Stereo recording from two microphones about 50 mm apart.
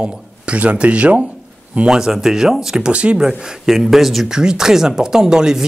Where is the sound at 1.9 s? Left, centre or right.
Centre.